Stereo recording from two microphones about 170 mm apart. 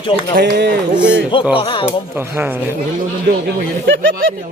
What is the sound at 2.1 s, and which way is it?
Speech, 10° right (ahead or behind).